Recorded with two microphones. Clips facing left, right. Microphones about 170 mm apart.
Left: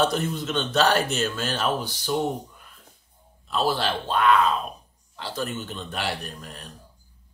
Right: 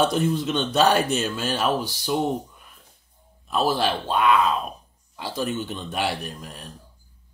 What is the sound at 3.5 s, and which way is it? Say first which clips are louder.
Speech: right 2 dB; 15° right (ahead or behind).